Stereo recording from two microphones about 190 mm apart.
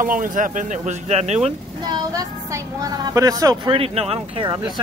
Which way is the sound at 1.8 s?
20° right (ahead or behind).